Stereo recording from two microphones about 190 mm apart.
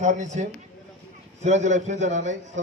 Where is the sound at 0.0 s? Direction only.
40° right (ahead or behind).